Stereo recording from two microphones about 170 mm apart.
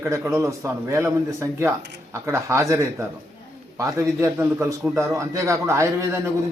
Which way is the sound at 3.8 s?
20° right (ahead or behind).